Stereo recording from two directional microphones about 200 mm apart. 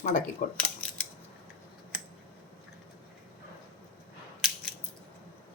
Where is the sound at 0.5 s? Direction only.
5° left (ahead or behind).